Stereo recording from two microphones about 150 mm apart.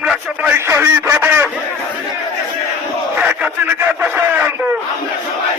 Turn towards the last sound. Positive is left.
turn(degrees=-10)  # may be behind; listen again after turning